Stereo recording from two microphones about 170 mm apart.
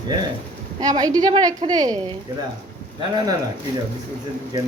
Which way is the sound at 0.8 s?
25° right (ahead or behind).